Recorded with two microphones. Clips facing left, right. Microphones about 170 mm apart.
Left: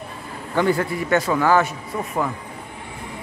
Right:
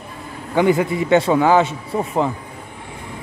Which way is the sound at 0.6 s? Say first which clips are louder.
Right 4 dB; 15° right (ahead or behind).